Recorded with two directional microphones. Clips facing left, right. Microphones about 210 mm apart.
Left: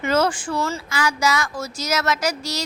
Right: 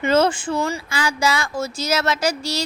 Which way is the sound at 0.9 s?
30° right (ahead or behind).